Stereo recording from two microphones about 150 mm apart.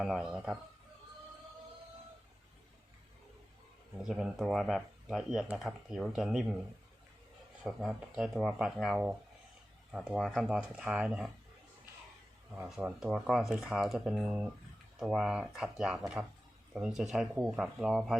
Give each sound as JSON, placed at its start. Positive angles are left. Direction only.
{"t": 0.0, "sound": "speech", "side_deg": -5}
{"t": 4.0, "sound": "speech", "side_deg": -5}
{"t": 7.6, "sound": "speech", "side_deg": 0}
{"t": 12.5, "sound": "speech", "side_deg": -5}